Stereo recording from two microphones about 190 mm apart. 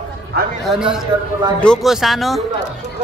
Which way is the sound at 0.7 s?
5° right (ahead or behind).